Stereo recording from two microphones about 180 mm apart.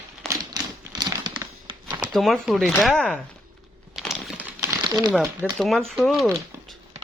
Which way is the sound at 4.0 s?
Centre (ahead or behind).